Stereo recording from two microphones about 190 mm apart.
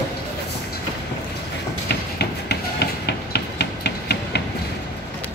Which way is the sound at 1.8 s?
60° left (ahead or behind).